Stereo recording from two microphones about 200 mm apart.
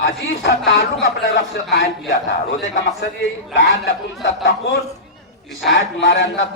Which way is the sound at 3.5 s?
65° left (ahead or behind).